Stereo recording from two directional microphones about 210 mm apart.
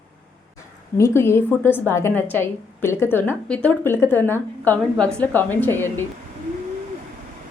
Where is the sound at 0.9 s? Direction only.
10° left (ahead or behind).